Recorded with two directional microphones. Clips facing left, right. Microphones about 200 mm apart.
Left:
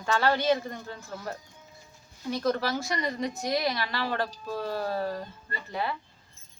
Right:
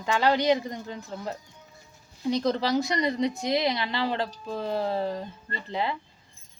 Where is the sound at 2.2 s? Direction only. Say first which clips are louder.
Right 3 dB; 20° right (ahead or behind).